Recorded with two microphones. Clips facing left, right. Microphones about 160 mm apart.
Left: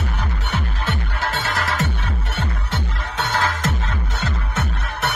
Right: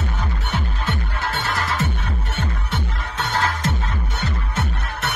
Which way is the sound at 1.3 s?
90° left.